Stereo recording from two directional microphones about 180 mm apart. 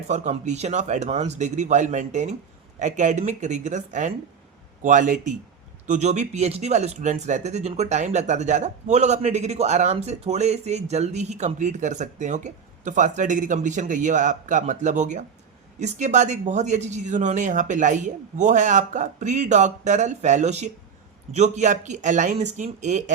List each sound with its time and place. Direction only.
0.1 s speech: 40° right (ahead or behind)